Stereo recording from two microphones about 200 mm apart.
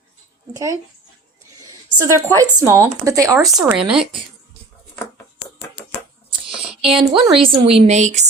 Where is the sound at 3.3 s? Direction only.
Centre (ahead or behind).